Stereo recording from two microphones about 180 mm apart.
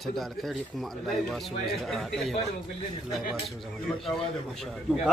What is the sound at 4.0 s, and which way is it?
Speech, 5° left (ahead or behind).